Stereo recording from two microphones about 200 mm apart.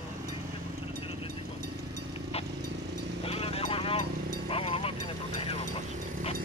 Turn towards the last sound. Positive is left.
turn(degrees=30)  # may be behind; listen again after turning